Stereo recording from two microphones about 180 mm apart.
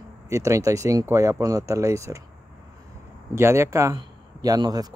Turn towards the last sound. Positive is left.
turn(degrees=-20)  # may be behind; listen again after turning